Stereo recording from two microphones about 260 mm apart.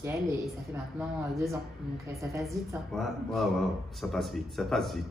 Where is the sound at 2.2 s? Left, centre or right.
Centre.